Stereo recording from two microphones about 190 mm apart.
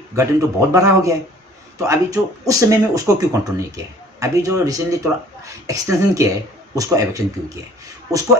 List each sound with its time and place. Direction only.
0.1 s speech: 15° right (ahead or behind)